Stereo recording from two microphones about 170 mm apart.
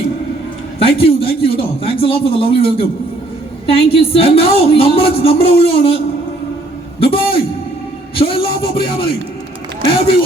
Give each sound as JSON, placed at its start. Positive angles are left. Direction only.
{"t": 0.8, "sound": "a woman's voice", "side_deg": 35}
{"t": 7.0, "sound": "a man's voice", "side_deg": 35}
{"t": 8.1, "sound": "a sound", "side_deg": 30}